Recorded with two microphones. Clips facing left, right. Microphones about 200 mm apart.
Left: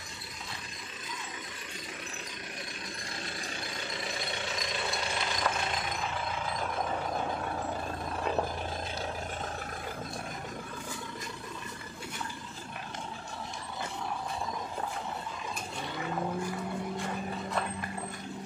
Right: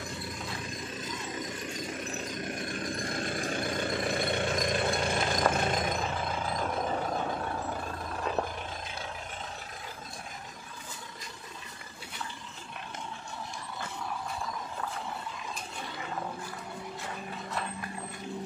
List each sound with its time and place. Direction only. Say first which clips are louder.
2.7 s vehicle: right 9 dB; 50° right (ahead or behind)